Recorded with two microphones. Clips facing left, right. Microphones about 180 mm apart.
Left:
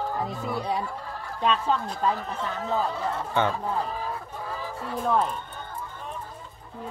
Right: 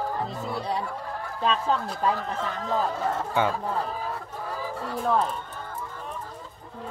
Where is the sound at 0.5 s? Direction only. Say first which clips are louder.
Left 1 dB; centre (ahead or behind).